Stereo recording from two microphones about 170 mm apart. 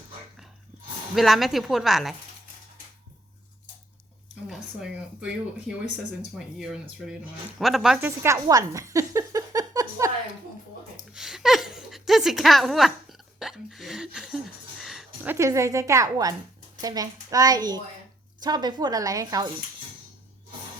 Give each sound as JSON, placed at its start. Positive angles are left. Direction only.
{"t": 1.1, "sound": "a woman's voice", "side_deg": 0}
{"t": 4.4, "sound": "a woman's voice", "side_deg": 0}
{"t": 8.2, "sound": "a sound", "side_deg": -20}
{"t": 11.1, "sound": "chuckle", "side_deg": -5}
{"t": 16.8, "sound": "a woman's voice", "side_deg": -20}